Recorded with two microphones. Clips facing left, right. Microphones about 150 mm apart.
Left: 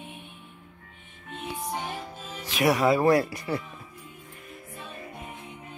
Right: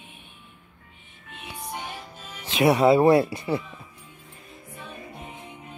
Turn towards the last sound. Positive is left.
turn(degrees=-20)  # may be behind; listen again after turning